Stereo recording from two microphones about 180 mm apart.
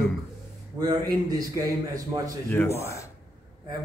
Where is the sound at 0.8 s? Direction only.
20° right (ahead or behind).